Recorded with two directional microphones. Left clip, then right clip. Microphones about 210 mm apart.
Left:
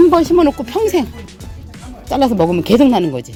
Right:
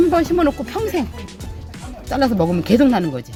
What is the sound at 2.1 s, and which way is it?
Speech, 20° left (ahead or behind).